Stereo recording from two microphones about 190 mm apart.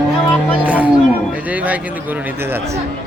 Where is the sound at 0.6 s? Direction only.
10° right (ahead or behind).